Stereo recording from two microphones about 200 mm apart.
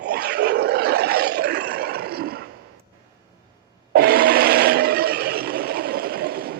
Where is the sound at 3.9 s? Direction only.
50° right (ahead or behind).